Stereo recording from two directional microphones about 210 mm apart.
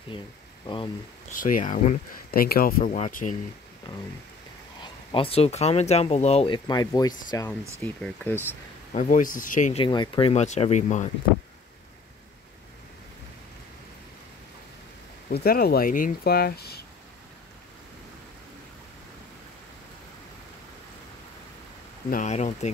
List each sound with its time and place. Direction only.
1.3 s speech: 40° left (ahead or behind)
5.1 s speech: 25° left (ahead or behind); by 8.4 s 5° left (ahead or behind)
8.9 s speech: 40° left (ahead or behind)
9.8 s speech: 20° left (ahead or behind)
15.3 s speech: 45° left (ahead or behind)
22.1 s speech: 35° left (ahead or behind)